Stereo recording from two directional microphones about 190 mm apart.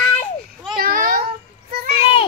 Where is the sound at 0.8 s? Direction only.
50° right (ahead or behind).